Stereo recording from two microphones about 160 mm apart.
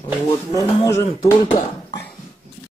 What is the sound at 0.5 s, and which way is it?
Speech, 20° left (ahead or behind).